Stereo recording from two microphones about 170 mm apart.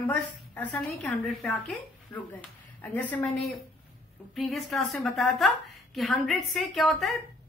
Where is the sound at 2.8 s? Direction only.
10° left (ahead or behind).